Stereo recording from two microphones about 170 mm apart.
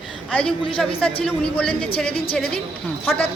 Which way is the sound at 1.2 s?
5° left (ahead or behind).